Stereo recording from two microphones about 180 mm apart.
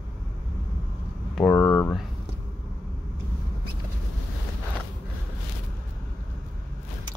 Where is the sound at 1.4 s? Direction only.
15° left (ahead or behind).